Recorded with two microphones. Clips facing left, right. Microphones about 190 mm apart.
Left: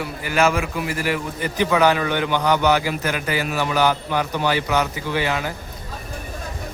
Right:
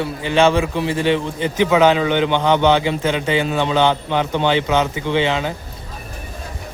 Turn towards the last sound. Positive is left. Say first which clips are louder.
# right 5 dB
turn(degrees=-25)  # may be behind; listen again after turning